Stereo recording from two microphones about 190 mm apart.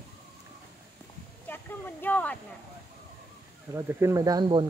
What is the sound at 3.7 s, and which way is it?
Speech, 15° right (ahead or behind).